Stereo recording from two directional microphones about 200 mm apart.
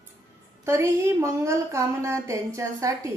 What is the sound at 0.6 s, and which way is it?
Speech, 15° right (ahead or behind).